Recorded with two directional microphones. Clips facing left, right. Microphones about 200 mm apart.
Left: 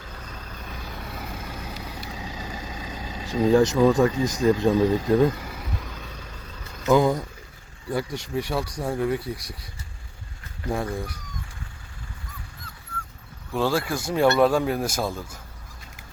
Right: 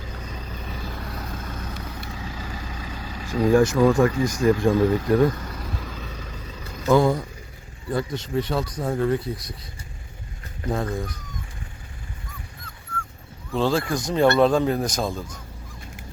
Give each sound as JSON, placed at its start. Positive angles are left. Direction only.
{"t": 0.0, "sound": "vehicle", "side_deg": -10}
{"t": 4.4, "sound": "speech", "side_deg": 20}
{"t": 5.5, "sound": "vehicle", "side_deg": 5}
{"t": 6.8, "sound": "speech", "side_deg": 10}
{"t": 10.7, "sound": "speech", "side_deg": 10}
{"t": 13.7, "sound": "speech", "side_deg": 5}